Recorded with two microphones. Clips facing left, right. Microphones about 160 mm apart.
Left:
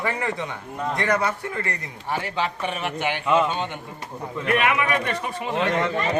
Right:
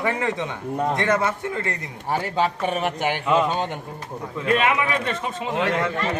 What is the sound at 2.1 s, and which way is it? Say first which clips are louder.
A man's voice: right 4 dB; 40° right (ahead or behind).